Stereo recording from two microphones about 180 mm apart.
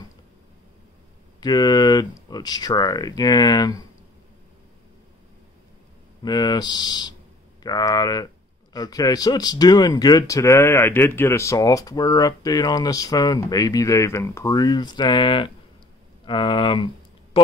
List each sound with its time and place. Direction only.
1.4 s speech: 20° left (ahead or behind)
6.2 s speech: 20° left (ahead or behind)